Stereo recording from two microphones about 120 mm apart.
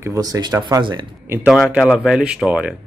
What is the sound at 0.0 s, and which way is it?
Speech, 30° right (ahead or behind).